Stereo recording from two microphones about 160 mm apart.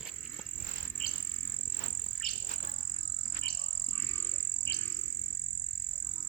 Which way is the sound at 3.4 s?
75° left (ahead or behind).